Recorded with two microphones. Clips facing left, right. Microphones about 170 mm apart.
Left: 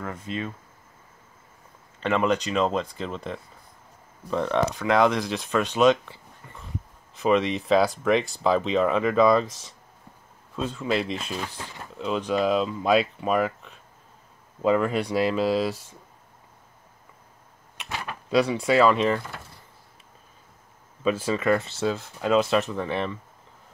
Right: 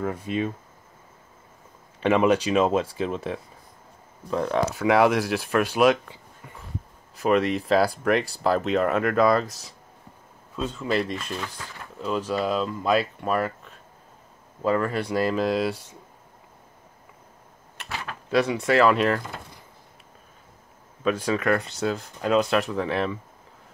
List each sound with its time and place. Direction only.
0.0 s speech: 15° right (ahead or behind)
2.0 s speech: 15° right (ahead or behind)
11.4 s speech: 25° left (ahead or behind)
12.0 s speech: centre (ahead or behind)
14.6 s speech: 20° left (ahead or behind)
15.1 s speech: 5° left (ahead or behind)
18.0 s door: 5° right (ahead or behind)
18.6 s speech: 5° left (ahead or behind)
21.0 s speech: 5° left (ahead or behind)